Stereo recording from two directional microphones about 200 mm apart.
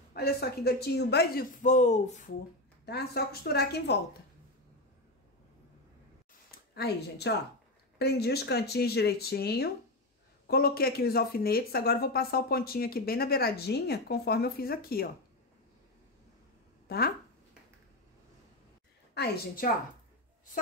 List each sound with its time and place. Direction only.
0.1 s speech: 50° left (ahead or behind)
1.6 s speech: 35° left (ahead or behind)
2.8 s speech: 55° left (ahead or behind)
6.7 s speech: 55° left (ahead or behind)
16.8 s speech: 50° left (ahead or behind)
19.1 s speech: 50° left (ahead or behind)